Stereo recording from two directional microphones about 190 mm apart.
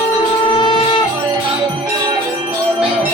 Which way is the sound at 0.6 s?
25° left (ahead or behind).